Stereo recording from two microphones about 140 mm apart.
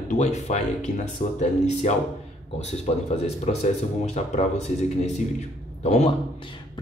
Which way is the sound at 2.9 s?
45° left (ahead or behind).